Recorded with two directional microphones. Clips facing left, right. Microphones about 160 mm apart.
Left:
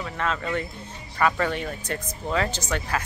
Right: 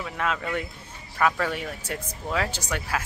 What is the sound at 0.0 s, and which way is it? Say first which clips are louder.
Speech: left 1 dB; 5° right (ahead or behind).